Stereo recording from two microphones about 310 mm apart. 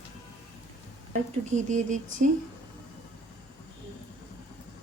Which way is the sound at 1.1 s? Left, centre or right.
Right.